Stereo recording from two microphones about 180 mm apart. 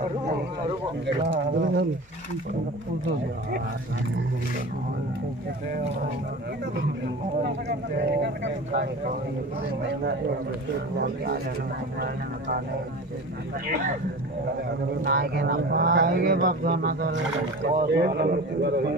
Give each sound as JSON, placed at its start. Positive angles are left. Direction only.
{"t": 1.0, "sound": "speech", "side_deg": -80}
{"t": 8.0, "sound": "speech", "side_deg": -70}
{"t": 12.0, "sound": "speech", "side_deg": -55}
{"t": 15.0, "sound": "speech", "side_deg": -55}